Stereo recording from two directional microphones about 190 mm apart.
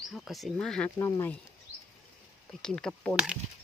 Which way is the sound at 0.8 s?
15° left (ahead or behind).